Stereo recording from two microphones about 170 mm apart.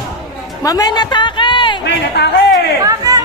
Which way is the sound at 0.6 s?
20° left (ahead or behind).